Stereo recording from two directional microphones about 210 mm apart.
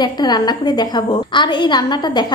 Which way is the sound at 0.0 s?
20° left (ahead or behind).